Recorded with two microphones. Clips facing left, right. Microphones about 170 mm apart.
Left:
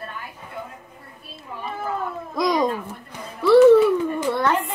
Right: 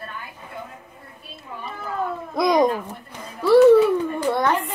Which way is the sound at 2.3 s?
65° right (ahead or behind).